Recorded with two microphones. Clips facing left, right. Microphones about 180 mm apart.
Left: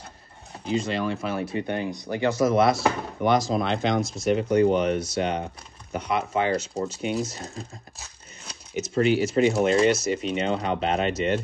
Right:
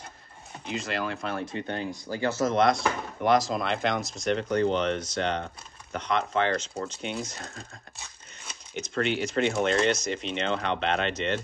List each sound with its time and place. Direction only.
0.7 s speech: centre (ahead or behind)
10.5 s speech: 40° left (ahead or behind)
10.8 s speech: 5° left (ahead or behind)